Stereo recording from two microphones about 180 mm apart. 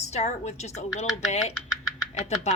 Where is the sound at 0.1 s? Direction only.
40° left (ahead or behind).